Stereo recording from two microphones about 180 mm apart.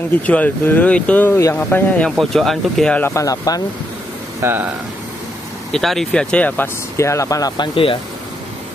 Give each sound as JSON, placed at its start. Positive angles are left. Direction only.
{"t": 0.3, "sound": "speech", "side_deg": 10}
{"t": 4.4, "sound": "speech", "side_deg": -15}
{"t": 5.7, "sound": "speech", "side_deg": 0}